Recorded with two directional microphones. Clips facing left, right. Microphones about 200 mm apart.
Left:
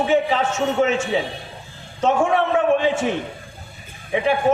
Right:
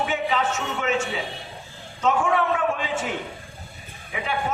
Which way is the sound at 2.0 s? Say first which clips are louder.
Left 4 dB; 30° left (ahead or behind).